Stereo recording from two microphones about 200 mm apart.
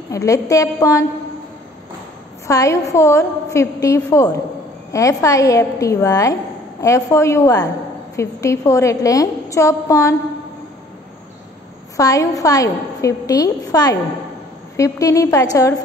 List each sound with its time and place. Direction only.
0.1 s a woman's voice: 15° left (ahead or behind)
2.4 s a woman's voice: 15° left (ahead or behind)
12.0 s a woman's voice: 15° left (ahead or behind)